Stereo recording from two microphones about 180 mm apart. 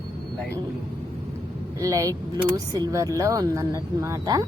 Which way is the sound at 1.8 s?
15° right (ahead or behind).